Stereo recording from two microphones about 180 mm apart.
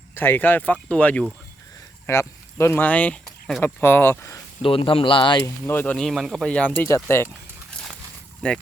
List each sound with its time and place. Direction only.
0.2 s speech: 10° left (ahead or behind)
4.6 s speech: 30° left (ahead or behind)
5.6 s speech: 10° left (ahead or behind)
6.7 s speech: 15° left (ahead or behind)
8.4 s speech: 5° left (ahead or behind)